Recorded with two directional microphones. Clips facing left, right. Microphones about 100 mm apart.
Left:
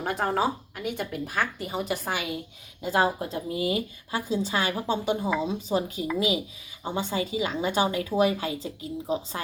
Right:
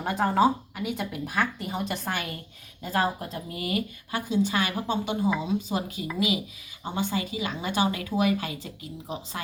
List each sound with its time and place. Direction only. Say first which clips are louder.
0.0 s speech: right 3 dB; centre (ahead or behind)
2.8 s a woman's voice: left 3 dB; 25° left (ahead or behind)